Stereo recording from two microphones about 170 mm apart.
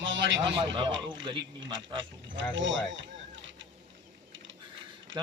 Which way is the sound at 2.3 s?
90° right.